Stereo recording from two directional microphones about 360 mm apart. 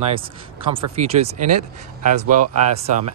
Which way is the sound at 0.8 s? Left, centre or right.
Right.